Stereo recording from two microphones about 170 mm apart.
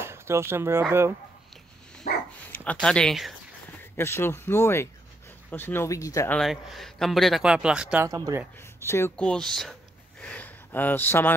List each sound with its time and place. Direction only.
0.0 s speech: 15° right (ahead or behind)
2.1 s dog: 50° left (ahead or behind)
2.5 s a man's voice: 10° left (ahead or behind)
3.9 s speech: 15° left (ahead or behind)
6.3 s a man's voice: centre (ahead or behind)
8.1 s speech: 20° right (ahead or behind)
8.7 s a man's voice: 15° left (ahead or behind)